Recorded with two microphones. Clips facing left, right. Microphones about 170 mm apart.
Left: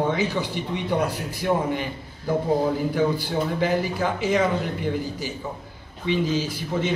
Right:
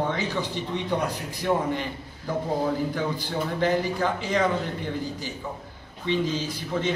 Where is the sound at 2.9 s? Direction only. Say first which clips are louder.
Left 5 dB; 5° left (ahead or behind).